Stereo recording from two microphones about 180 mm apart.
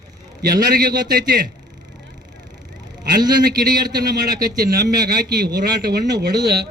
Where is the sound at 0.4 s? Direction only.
60° right (ahead or behind).